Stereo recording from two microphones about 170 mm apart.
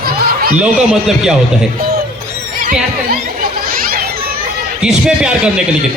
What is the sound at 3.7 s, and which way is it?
Children playing, 55° right (ahead or behind).